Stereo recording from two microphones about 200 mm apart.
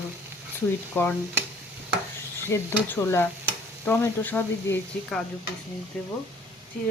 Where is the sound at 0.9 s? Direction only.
10° left (ahead or behind).